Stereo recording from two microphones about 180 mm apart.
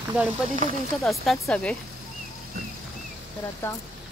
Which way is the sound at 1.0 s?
Centre (ahead or behind).